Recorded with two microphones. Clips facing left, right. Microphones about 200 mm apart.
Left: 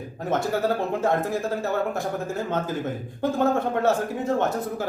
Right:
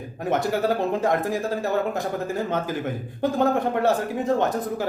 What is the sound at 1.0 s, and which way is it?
Speech, 15° right (ahead or behind).